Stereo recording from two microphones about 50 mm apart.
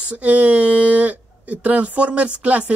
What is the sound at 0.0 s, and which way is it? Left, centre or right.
Speech, right.